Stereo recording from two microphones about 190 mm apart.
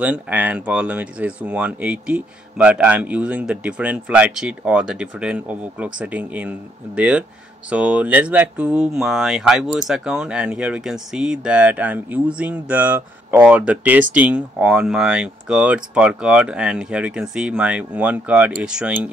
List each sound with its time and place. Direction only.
0.0 s speech: 5° right (ahead or behind)